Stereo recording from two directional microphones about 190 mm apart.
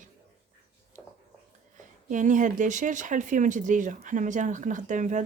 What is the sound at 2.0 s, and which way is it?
Speech, 40° right (ahead or behind).